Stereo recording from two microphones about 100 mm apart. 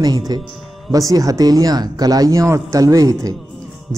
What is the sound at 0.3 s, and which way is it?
A man's voice, 45° right (ahead or behind).